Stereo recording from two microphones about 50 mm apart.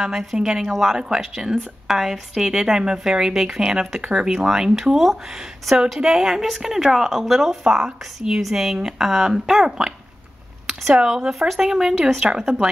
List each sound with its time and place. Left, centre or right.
0.0 s a woman's voice: centre
11.2 s a woman's voice: centre